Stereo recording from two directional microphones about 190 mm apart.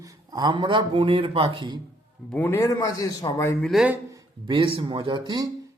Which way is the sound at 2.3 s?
10° left (ahead or behind).